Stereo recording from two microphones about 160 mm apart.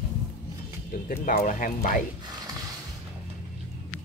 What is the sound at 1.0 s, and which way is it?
Speech, 65° left (ahead or behind).